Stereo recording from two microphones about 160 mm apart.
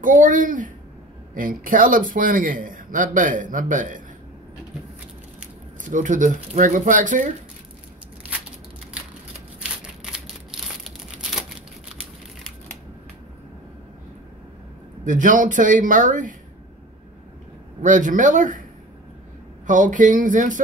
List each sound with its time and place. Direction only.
0.0 s a man's voice: 55° right (ahead or behind)
5.9 s speech: 50° right (ahead or behind)
10.5 s crumpling: 5° right (ahead or behind)
15.0 s a man's voice: 55° right (ahead or behind)
17.8 s speech: 50° right (ahead or behind)
19.6 s speech: 55° right (ahead or behind)